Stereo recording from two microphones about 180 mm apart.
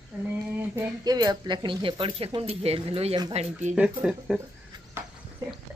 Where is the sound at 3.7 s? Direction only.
40° right (ahead or behind).